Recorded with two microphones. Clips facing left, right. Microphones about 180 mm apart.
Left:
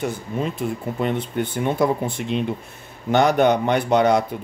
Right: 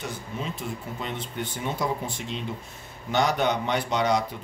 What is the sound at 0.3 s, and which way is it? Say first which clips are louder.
Speech: left 8 dB; 55° left (ahead or behind).